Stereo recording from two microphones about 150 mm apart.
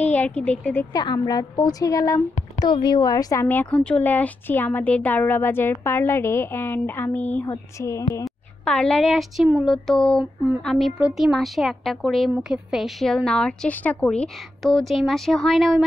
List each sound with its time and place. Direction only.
0.0 s speech: 10° left (ahead or behind)
0.9 s a woman's voice: 25° left (ahead or behind)
3.4 s speech: 10° left (ahead or behind)
8.6 s a woman's voice: 5° left (ahead or behind)